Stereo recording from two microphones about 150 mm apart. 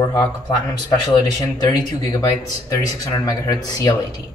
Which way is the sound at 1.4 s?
25° left (ahead or behind).